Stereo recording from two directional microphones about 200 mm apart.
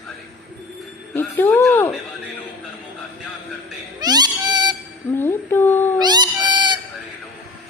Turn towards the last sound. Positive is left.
turn(degrees=-20)  # may be behind; listen again after turning